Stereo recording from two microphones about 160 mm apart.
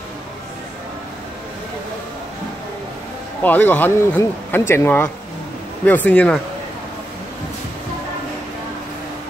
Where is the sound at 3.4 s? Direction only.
10° left (ahead or behind).